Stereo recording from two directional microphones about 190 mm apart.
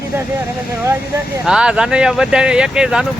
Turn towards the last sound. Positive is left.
turn(degrees=-5)  # may be behind; listen again after turning